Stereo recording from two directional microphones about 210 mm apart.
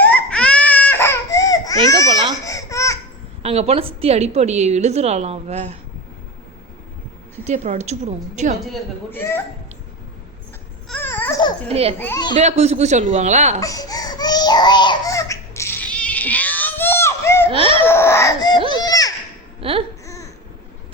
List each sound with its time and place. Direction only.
0.0 s baby cry: 5° left (ahead or behind)
2.4 s a sound: 15° left (ahead or behind)
3.4 s a woman's voice: 30° right (ahead or behind)
7.4 s a woman's voice: 35° right (ahead or behind)
9.0 s speech: 10° left (ahead or behind)
10.8 s babbling: 10° left (ahead or behind)
11.7 s a child's voice: 30° right (ahead or behind)
11.9 s speech: 10° left (ahead or behind)
12.4 s a woman's voice: 30° right (ahead or behind)
13.6 s baby cry: 15° left (ahead or behind)
17.5 s a sound: 25° right (ahead or behind)
17.7 s a sound: 10° left (ahead or behind)
19.5 s baby cry: 25° right (ahead or behind)